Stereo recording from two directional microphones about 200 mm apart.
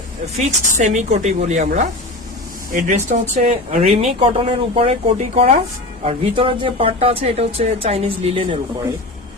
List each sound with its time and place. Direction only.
0.3 s a woman's voice: 35° right (ahead or behind)